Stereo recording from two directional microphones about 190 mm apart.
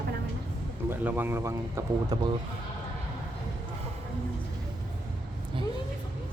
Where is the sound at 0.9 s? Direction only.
10° right (ahead or behind).